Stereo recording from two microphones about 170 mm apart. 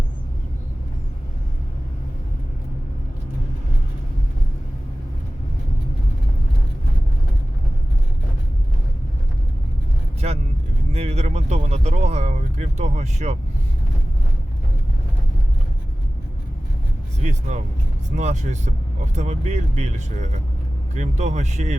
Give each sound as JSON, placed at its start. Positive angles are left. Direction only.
{"t": 10.2, "sound": "vehicle", "side_deg": -40}
{"t": 10.9, "sound": "a sound", "side_deg": -40}
{"t": 17.2, "sound": "speech", "side_deg": -45}